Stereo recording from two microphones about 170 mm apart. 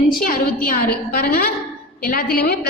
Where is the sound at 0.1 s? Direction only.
60° left (ahead or behind).